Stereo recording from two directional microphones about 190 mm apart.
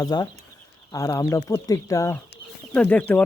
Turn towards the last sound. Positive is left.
turn(degrees=10)  # may be behind; listen again after turning